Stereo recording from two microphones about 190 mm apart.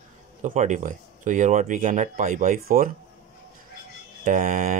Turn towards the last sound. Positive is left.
turn(degrees=-45)  # may be behind; listen again after turning